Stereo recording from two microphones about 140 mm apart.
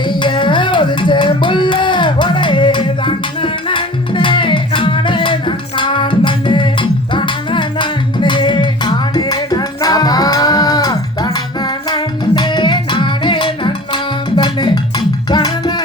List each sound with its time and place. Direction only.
0.0 s music: 35° left (ahead or behind)